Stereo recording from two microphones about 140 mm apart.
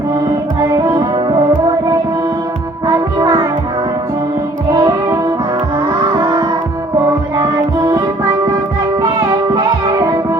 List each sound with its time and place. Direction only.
0.8 s music: 30° right (ahead or behind)
2.8 s music: 25° right (ahead or behind)
4.7 s music: 25° right (ahead or behind)